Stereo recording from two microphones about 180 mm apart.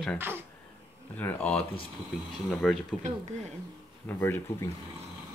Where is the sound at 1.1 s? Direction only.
10° left (ahead or behind).